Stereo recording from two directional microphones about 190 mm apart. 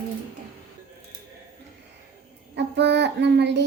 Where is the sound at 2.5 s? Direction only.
65° right (ahead or behind).